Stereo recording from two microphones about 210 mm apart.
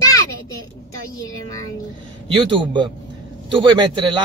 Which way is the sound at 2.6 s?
20° right (ahead or behind).